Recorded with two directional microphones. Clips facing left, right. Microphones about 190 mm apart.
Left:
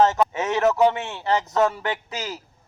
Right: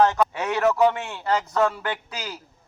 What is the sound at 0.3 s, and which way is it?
A man's voice, 20° left (ahead or behind).